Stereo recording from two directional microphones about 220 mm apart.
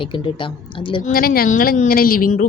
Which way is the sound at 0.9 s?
25° left (ahead or behind).